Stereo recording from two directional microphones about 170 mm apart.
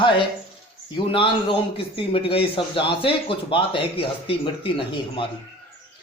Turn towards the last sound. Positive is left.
turn(degrees=30)  # may be behind; listen again after turning